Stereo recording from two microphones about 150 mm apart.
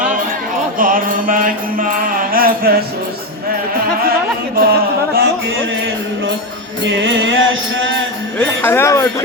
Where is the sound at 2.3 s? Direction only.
80° right.